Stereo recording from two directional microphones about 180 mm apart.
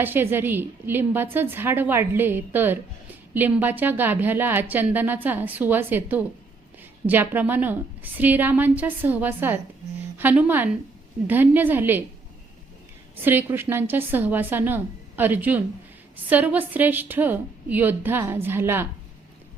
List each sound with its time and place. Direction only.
0.0 s a woman's voice: 10° right (ahead or behind)
13.2 s a woman's voice: 10° right (ahead or behind)